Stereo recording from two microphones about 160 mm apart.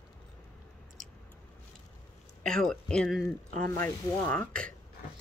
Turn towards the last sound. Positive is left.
turn(degrees=5)  # may be behind; listen again after turning